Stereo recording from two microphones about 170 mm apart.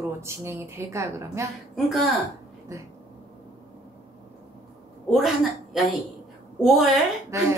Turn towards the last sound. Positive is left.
turn(degrees=-15)  # may be behind; listen again after turning